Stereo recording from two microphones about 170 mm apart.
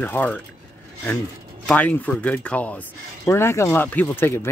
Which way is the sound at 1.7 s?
10° left (ahead or behind).